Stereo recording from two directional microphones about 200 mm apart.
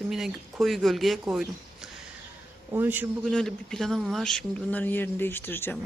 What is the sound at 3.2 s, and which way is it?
Speech, centre (ahead or behind).